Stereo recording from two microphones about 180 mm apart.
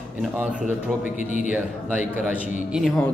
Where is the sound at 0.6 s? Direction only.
45° left (ahead or behind).